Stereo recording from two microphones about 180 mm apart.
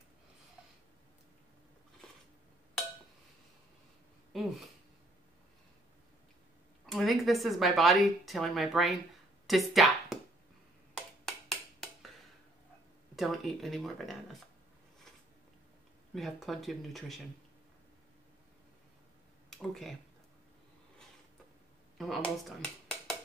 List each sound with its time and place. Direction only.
4.3 s speech: centre (ahead or behind)
6.9 s speech: centre (ahead or behind)
11.2 s a sound: centre (ahead or behind)
13.1 s speech: centre (ahead or behind)
16.2 s speech: centre (ahead or behind)
19.5 s speech: centre (ahead or behind)
21.9 s speech: centre (ahead or behind)